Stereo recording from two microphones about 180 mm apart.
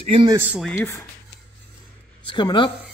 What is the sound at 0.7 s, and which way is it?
Speech, 15° left (ahead or behind).